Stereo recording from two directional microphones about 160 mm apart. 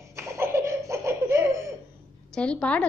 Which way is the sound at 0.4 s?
15° right (ahead or behind).